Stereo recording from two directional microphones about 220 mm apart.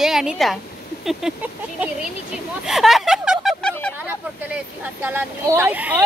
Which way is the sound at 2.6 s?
Centre (ahead or behind).